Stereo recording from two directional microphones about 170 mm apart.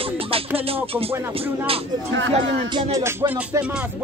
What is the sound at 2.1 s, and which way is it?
Speech, 90° right.